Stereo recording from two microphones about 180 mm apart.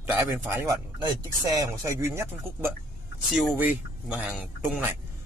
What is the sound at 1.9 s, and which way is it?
Speech, 15° right (ahead or behind).